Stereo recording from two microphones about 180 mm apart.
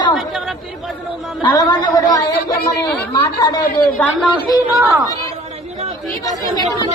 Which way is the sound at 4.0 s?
10° left (ahead or behind).